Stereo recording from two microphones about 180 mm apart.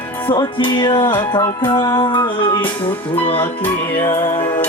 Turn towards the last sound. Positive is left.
turn(degrees=25)  # may be behind; listen again after turning